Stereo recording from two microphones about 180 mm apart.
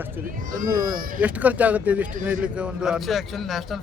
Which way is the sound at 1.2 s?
10° right (ahead or behind).